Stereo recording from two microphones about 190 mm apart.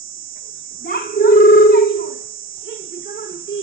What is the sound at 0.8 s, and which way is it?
Child singing, 50° left (ahead or behind).